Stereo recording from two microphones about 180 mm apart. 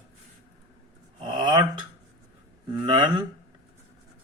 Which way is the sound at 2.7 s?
25° right (ahead or behind).